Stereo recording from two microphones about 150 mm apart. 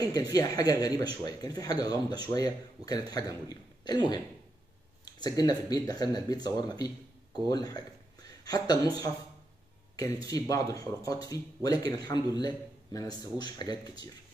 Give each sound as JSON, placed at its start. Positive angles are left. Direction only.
{"t": 0.1, "sound": "speech", "side_deg": 25}
{"t": 5.2, "sound": "speech", "side_deg": 25}
{"t": 10.2, "sound": "speech", "side_deg": 25}